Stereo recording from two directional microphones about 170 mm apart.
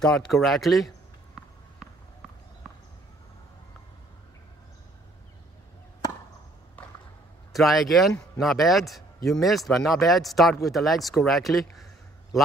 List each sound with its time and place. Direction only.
0.0 s a man's voice: centre (ahead or behind)
7.5 s a man's voice: centre (ahead or behind)
11.7 s a sound: centre (ahead or behind)